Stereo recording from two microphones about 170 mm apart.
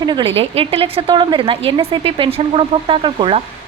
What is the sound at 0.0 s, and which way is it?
A woman's voice, 30° right (ahead or behind).